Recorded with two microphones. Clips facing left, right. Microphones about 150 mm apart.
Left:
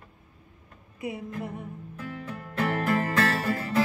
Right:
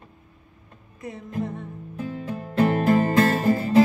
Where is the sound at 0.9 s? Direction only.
10° left (ahead or behind).